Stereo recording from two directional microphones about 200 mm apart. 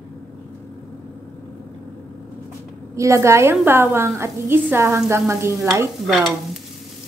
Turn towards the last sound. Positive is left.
turn(degrees=0)  # may be behind; listen again after turning